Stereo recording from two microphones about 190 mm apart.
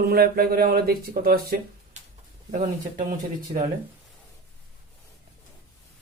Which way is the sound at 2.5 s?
40° right (ahead or behind).